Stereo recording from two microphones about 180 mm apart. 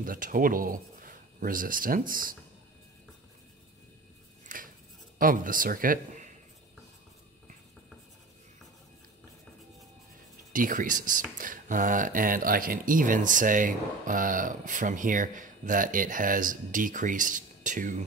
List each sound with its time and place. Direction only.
0.0 s speech: 50° right (ahead or behind)
4.5 s scissors: 50° right (ahead or behind)
5.2 s speech: 50° right (ahead or behind)
10.5 s speech: 50° right (ahead or behind)